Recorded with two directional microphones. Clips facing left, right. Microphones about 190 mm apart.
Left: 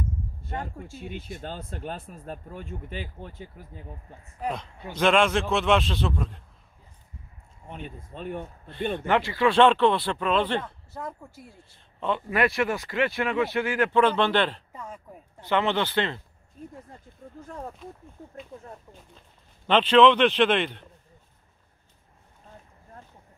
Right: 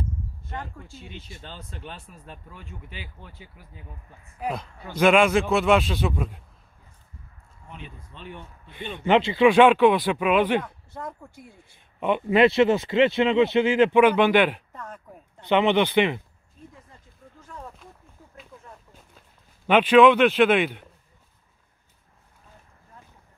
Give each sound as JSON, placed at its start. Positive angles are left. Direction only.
{"t": 0.5, "sound": "speech", "side_deg": 30}
{"t": 0.9, "sound": "speech", "side_deg": 55}
{"t": 4.4, "sound": "speech", "side_deg": -5}
{"t": 7.6, "sound": "speech", "side_deg": 40}
{"t": 9.0, "sound": "speech", "side_deg": -20}
{"t": 10.9, "sound": "speech", "side_deg": 5}
{"t": 12.0, "sound": "speech", "side_deg": -20}
{"t": 14.7, "sound": "a sound", "side_deg": 10}
{"t": 15.4, "sound": "speech", "side_deg": -20}
{"t": 16.7, "sound": "a sound", "side_deg": 45}
{"t": 19.7, "sound": "speech", "side_deg": -10}